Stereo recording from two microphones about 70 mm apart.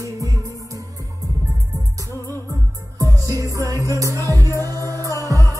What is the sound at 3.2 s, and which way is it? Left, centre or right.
Music, right.